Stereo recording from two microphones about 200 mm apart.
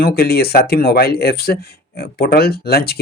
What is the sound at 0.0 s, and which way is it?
Speech, 50° left (ahead or behind).